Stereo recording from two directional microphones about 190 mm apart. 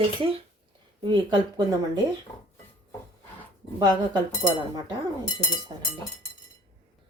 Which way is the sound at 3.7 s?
25° right (ahead or behind).